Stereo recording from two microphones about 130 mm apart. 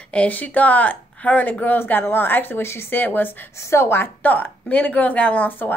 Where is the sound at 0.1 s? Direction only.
10° left (ahead or behind).